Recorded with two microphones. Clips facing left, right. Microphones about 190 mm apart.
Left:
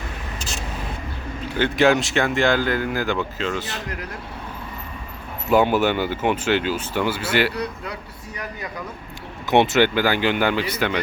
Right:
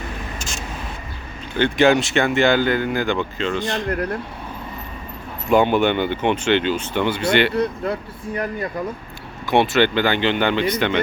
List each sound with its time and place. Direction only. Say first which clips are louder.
0.3 s vehicle: right 1 dB; 35° left (ahead or behind)
1.5 s speech: right 2 dB; 5° left (ahead or behind)
3.8 s speech: right 9 dB; 55° right (ahead or behind)
5.5 s speech: right 1 dB; 5° left (ahead or behind)
7.6 s speech: right 7 dB; 50° right (ahead or behind)
9.5 s speech: even; 20° left (ahead or behind)